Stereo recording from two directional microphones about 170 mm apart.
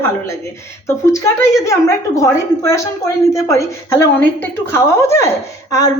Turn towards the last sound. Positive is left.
turn(degrees=20)  # may be behind; listen again after turning